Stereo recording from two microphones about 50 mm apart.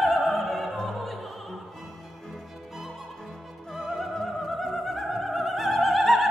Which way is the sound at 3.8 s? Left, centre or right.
Centre.